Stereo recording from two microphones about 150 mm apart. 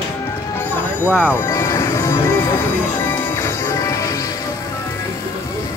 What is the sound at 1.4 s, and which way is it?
Music, 20° left (ahead or behind).